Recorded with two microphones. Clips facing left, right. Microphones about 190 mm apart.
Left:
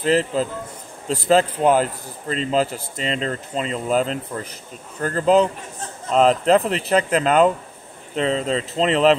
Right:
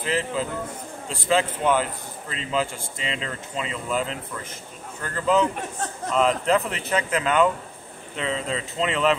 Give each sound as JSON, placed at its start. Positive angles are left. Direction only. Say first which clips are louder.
{"t": 0.0, "sound": "a man's voice", "louder": "left 7 dB", "side_deg": 35}